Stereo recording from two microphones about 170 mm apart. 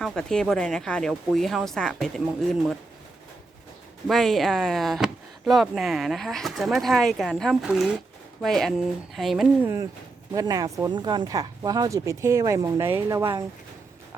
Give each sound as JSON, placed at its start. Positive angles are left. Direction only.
{"t": 0.0, "sound": "speech", "side_deg": 0}
{"t": 4.0, "sound": "speech", "side_deg": 0}
{"t": 10.3, "sound": "speech", "side_deg": -20}